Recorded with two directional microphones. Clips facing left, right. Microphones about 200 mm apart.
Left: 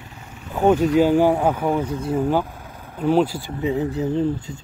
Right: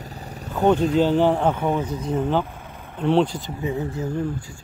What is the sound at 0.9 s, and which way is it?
A man's voice, 10° left (ahead or behind).